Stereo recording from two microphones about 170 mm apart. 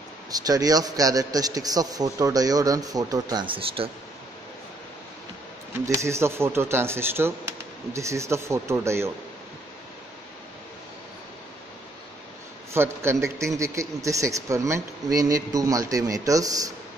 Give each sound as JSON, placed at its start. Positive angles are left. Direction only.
{"t": 0.3, "sound": "a man's voice", "side_deg": -20}
{"t": 5.9, "sound": "speech", "side_deg": -15}
{"t": 12.7, "sound": "a man's voice", "side_deg": -15}